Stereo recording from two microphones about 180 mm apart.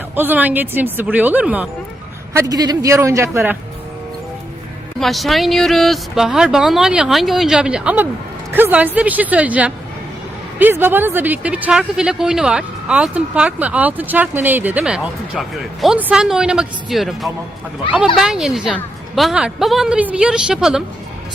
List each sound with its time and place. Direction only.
0.2 s speech: 10° right (ahead or behind)
2.3 s speech: 20° right (ahead or behind)
4.9 s speech: centre (ahead or behind)